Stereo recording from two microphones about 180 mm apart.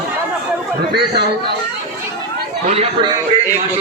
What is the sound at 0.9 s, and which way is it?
Speech, 65° right (ahead or behind).